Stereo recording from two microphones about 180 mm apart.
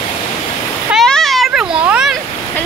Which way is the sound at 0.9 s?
Centre (ahead or behind).